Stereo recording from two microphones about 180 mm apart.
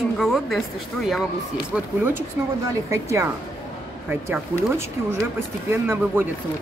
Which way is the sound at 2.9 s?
15° right (ahead or behind).